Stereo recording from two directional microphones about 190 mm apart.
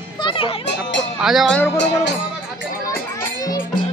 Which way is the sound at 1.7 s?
65° left (ahead or behind).